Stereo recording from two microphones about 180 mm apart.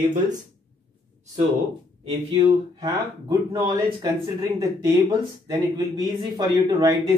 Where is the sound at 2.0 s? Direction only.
35° right (ahead or behind).